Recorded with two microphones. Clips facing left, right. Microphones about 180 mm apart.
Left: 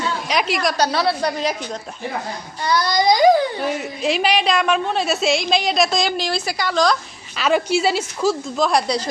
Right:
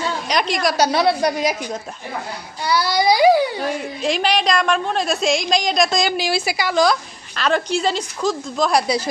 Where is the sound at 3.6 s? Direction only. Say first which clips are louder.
Even; 5° left (ahead or behind).